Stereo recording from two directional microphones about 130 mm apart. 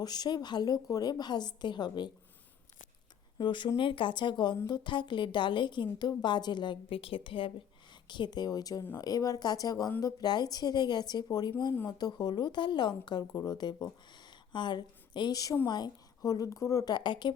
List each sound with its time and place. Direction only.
0.0 s a woman's voice: 30° left (ahead or behind)
3.3 s a woman's voice: 35° left (ahead or behind)